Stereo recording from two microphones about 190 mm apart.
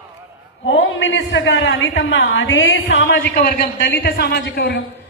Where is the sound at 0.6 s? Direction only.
80° left.